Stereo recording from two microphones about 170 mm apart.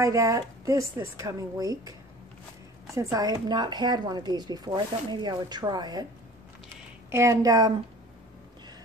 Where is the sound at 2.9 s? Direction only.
20° right (ahead or behind).